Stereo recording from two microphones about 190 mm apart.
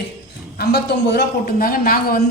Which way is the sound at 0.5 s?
60° left (ahead or behind).